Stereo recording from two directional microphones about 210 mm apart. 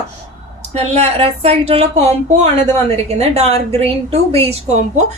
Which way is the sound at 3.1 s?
30° right (ahead or behind).